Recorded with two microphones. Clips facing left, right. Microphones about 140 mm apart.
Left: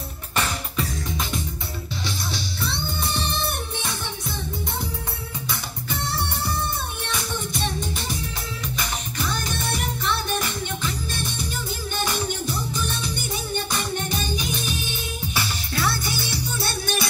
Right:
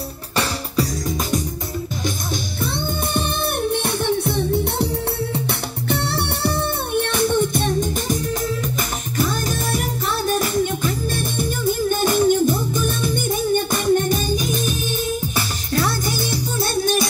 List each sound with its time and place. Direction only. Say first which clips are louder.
0.4 s music: right 5 dB; 40° right (ahead or behind)
3.2 s music: right 8 dB; 55° right (ahead or behind)
5.9 s music: right 6 dB; 65° right (ahead or behind); by 8.2 s 50° right (ahead or behind)
9.2 s music: right 7 dB; 45° right (ahead or behind)